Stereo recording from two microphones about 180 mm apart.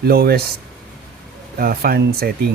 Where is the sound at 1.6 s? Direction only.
60° right (ahead or behind).